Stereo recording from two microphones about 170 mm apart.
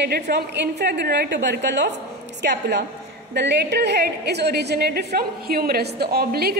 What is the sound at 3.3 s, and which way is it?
A woman's voice, 80° right.